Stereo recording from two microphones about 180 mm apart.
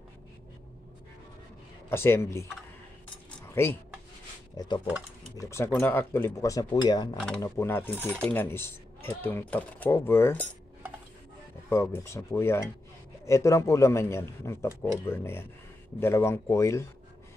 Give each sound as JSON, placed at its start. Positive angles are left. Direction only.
{"t": 1.9, "sound": "speech", "side_deg": 15}
{"t": 3.6, "sound": "speech", "side_deg": 15}
{"t": 11.7, "sound": "speech", "side_deg": 15}